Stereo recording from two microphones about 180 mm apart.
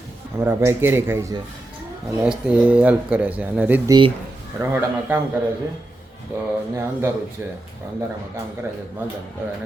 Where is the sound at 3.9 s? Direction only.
30° right (ahead or behind).